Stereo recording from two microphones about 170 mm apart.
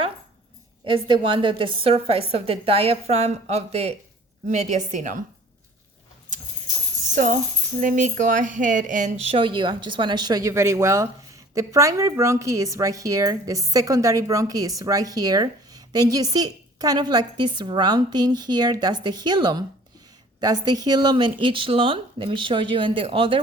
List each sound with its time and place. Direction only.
0.9 s a woman's voice: 30° right (ahead or behind); by 5.1 s 45° right (ahead or behind)
7.8 s speech: 50° right (ahead or behind); by 23.4 s 30° right (ahead or behind)